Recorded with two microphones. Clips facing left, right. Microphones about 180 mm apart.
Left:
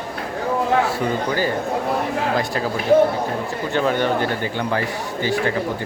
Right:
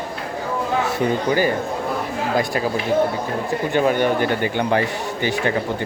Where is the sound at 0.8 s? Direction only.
20° right (ahead or behind).